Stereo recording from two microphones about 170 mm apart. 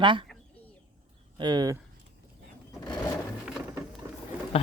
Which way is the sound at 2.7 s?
25° left (ahead or behind).